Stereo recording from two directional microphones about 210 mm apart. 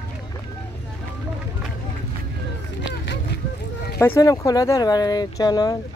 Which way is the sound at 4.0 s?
15° left (ahead or behind).